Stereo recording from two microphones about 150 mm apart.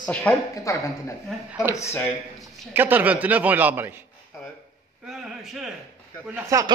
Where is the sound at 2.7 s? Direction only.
10° right (ahead or behind).